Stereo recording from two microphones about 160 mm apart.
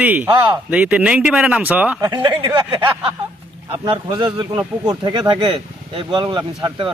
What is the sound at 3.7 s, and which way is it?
Speech, 30° right (ahead or behind).